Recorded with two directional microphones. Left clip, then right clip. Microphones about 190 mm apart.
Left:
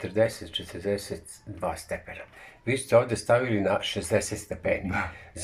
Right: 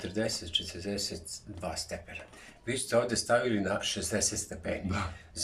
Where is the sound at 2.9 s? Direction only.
15° left (ahead or behind).